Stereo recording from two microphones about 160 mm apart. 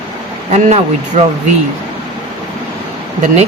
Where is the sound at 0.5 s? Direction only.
50° right (ahead or behind).